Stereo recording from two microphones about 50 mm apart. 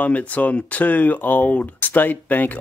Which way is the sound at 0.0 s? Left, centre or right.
Left.